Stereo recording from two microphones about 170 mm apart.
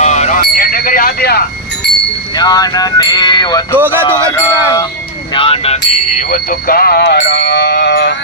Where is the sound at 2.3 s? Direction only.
25° left (ahead or behind).